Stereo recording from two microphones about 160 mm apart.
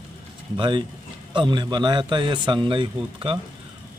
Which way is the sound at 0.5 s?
30° right (ahead or behind).